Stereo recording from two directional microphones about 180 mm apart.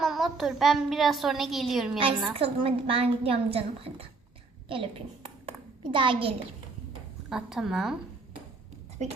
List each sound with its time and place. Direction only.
0.0 s a child's voice: centre (ahead or behind)
2.3 s a woman's voice: 30° right (ahead or behind)
5.5 s a sound: 25° right (ahead or behind)
7.3 s a child's voice: 5° right (ahead or behind)